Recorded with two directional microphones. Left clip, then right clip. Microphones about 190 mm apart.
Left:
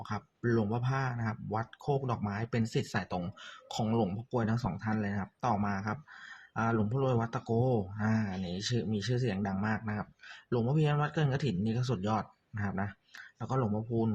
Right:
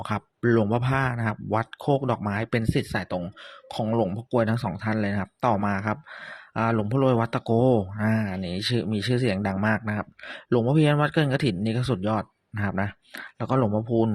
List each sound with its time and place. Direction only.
0.0 s speech: 45° right (ahead or behind)